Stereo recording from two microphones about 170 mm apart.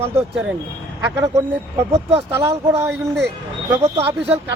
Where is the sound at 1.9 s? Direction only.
35° right (ahead or behind).